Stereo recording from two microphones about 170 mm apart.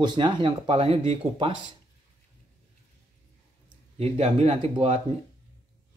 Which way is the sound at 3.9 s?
35° right (ahead or behind).